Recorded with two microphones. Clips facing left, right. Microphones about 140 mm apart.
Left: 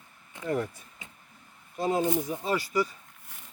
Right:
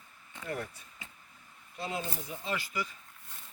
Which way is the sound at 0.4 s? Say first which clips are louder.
Left 8 dB; 45° left (ahead or behind).